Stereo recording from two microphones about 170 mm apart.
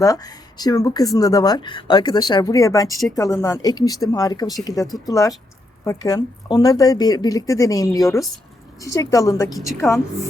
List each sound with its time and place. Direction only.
0.0 s speech: 20° left (ahead or behind)